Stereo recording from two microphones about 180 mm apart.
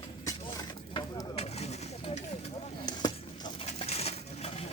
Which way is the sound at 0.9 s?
30° left (ahead or behind).